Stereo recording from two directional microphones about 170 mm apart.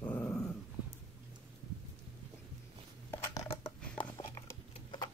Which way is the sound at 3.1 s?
20° left (ahead or behind).